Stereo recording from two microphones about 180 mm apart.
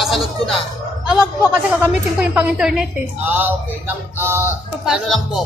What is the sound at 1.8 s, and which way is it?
A woman's voice, 10° right (ahead or behind).